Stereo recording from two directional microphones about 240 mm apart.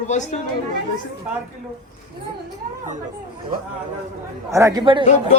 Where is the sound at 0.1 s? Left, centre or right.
Left.